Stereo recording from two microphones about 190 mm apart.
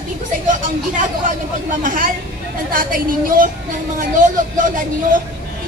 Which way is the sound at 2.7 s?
45° right (ahead or behind).